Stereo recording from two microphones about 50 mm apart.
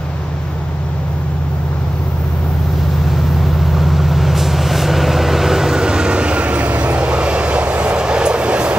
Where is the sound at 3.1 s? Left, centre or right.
Centre.